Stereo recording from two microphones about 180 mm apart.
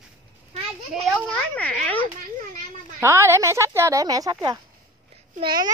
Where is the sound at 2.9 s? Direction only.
15° right (ahead or behind).